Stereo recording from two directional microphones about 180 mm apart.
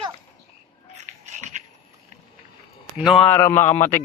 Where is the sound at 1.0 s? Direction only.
40° right (ahead or behind).